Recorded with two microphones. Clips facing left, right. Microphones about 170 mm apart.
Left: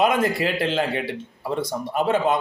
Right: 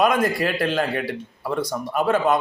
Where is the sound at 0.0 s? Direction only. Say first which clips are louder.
Right 1 dB; 20° left (ahead or behind).